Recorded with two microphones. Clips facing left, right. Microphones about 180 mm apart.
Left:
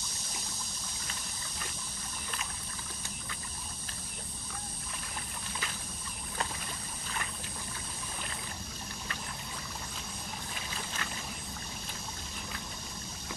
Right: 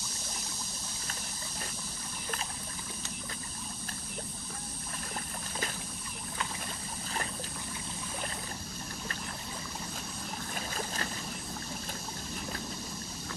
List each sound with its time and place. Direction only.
10.5 s boat: 45° right (ahead or behind)